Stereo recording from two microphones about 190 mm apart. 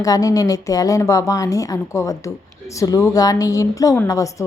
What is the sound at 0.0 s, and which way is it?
A woman's voice, 20° left (ahead or behind).